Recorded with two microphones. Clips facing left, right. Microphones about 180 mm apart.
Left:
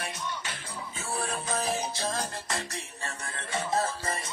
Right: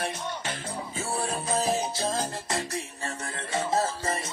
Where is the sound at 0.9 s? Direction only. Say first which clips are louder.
Right 2 dB; 30° right (ahead or behind).